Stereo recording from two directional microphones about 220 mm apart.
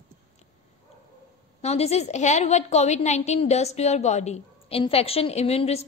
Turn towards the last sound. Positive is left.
turn(degrees=30)  # may be behind; listen again after turning